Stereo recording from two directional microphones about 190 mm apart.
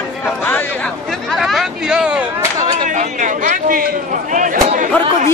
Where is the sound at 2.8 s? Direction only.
40° right (ahead or behind).